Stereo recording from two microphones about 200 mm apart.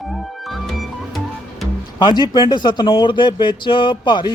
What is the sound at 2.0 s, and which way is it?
Speech, 20° left (ahead or behind).